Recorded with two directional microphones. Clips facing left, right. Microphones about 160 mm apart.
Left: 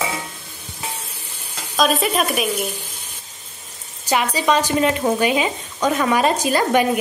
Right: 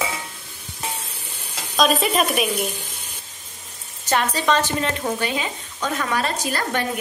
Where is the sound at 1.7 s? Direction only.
Centre (ahead or behind).